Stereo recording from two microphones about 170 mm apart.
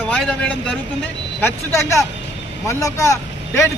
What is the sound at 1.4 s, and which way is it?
Speech, 15° left (ahead or behind).